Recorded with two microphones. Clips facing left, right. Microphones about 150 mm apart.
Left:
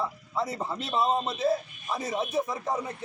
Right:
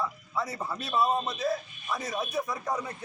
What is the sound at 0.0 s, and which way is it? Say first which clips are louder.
A man's voice: left 2 dB; 25° left (ahead or behind).